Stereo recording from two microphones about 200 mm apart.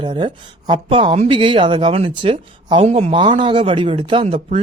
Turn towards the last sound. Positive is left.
turn(degrees=-30)  # may be behind; listen again after turning